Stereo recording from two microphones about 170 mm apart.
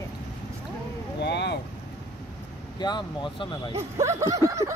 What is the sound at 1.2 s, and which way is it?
Speech, 80° left.